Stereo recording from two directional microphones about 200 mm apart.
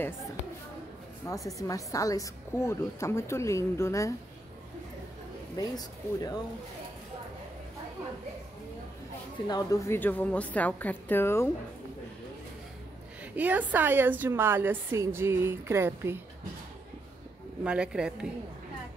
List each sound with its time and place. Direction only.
1.3 s speech: 15° left (ahead or behind)
5.6 s speech: 20° left (ahead or behind)
9.5 s speech: 15° left (ahead or behind)
13.2 s a woman's voice: 10° right (ahead or behind)
17.6 s speech: 5° right (ahead or behind)